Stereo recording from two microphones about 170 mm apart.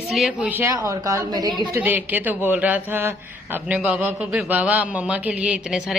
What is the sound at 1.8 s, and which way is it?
A man's voice, 10° right (ahead or behind).